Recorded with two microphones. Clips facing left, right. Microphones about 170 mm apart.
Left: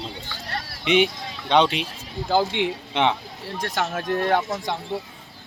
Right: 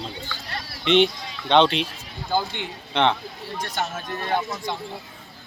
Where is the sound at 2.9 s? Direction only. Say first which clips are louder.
Right 2 dB; 10° left (ahead or behind).